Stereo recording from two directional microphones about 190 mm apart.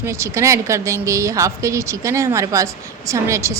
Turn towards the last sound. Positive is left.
turn(degrees=-15)  # may be behind; listen again after turning